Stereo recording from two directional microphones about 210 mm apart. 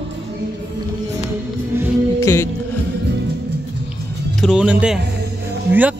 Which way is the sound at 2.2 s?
15° left (ahead or behind).